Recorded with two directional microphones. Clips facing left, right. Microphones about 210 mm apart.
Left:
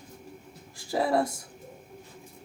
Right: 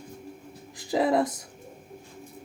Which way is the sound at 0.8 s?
20° right (ahead or behind).